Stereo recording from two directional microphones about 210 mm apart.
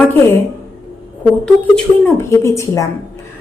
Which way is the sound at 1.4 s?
10° left (ahead or behind).